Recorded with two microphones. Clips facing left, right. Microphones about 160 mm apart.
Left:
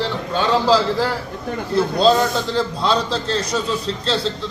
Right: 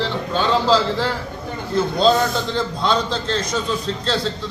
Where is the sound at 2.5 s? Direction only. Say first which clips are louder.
Left 1 dB; 35° left (ahead or behind).